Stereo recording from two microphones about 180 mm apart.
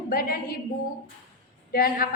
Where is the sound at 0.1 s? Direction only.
55° left (ahead or behind).